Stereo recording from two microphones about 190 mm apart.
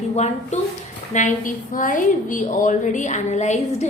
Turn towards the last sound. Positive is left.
turn(degrees=40)  # may be behind; listen again after turning